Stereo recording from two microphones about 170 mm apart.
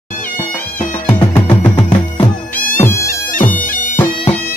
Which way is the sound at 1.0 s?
10° left (ahead or behind).